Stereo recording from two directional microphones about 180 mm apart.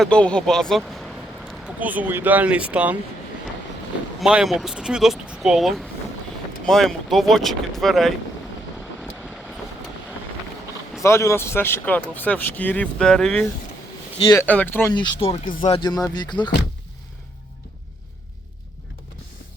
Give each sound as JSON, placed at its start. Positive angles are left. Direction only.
{"t": 0.0, "sound": "speech", "side_deg": 5}
{"t": 4.2, "sound": "speech", "side_deg": -5}
{"t": 11.0, "sound": "speech", "side_deg": 15}
{"t": 14.9, "sound": "speech", "side_deg": 30}
{"t": 15.9, "sound": "speech", "side_deg": 20}